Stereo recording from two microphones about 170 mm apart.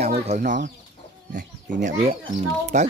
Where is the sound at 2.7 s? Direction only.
45° right (ahead or behind).